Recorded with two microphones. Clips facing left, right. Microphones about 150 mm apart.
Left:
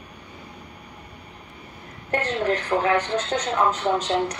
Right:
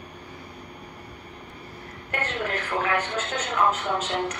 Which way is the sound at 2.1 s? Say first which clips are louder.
Left 6 dB; 35° left (ahead or behind).